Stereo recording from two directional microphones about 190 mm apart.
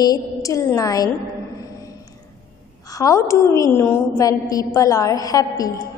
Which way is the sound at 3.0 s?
15° left (ahead or behind).